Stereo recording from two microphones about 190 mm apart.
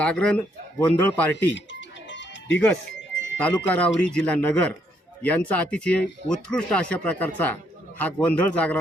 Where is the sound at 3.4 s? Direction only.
5° left (ahead or behind).